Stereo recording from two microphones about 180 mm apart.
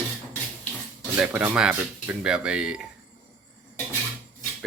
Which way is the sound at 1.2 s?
10° right (ahead or behind).